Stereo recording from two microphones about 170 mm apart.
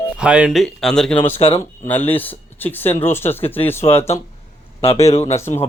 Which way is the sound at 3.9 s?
35° left (ahead or behind).